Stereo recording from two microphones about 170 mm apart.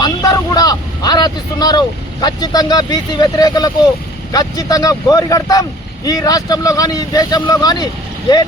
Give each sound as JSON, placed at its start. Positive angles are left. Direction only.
{"t": 0.0, "sound": "vehicle", "side_deg": 20}
{"t": 2.2, "sound": "speech", "side_deg": 25}